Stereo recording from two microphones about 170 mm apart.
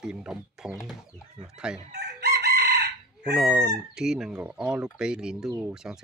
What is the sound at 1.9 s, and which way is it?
Chicken, 75° right (ahead or behind).